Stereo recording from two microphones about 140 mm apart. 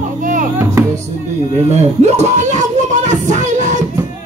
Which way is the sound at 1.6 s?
50° right (ahead or behind).